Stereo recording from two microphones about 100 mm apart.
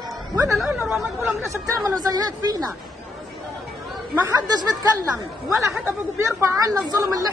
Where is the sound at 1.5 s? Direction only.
30° right (ahead or behind).